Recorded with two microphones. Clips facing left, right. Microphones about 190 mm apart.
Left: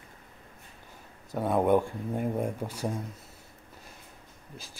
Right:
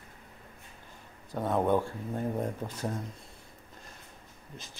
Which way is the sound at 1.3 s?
10° left (ahead or behind).